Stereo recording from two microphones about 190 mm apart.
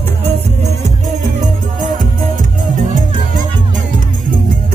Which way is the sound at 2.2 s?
45° right (ahead or behind).